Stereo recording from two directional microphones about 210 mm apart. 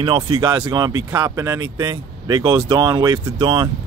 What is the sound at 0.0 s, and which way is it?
Speech, 25° right (ahead or behind).